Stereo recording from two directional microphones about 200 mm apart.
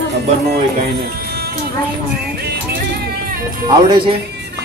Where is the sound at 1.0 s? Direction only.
50° right (ahead or behind).